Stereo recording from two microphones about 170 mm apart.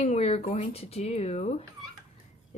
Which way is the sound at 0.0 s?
40° left (ahead or behind).